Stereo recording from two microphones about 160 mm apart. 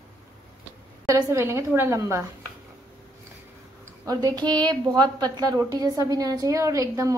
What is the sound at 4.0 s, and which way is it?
A woman's voice, 25° right (ahead or behind).